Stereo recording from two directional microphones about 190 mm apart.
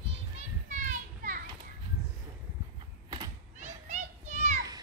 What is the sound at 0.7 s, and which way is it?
Children playing, 40° right (ahead or behind).